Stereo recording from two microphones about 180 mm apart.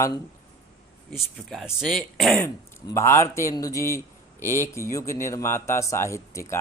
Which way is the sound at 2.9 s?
15° left (ahead or behind).